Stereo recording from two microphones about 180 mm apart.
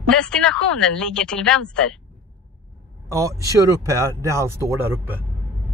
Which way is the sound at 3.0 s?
15° right (ahead or behind).